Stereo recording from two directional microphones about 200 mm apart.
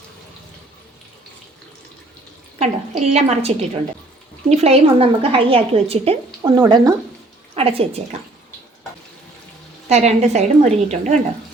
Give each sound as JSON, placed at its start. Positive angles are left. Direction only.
{"t": 2.6, "sound": "a woman's voice", "side_deg": -30}
{"t": 9.9, "sound": "a woman's voice", "side_deg": -35}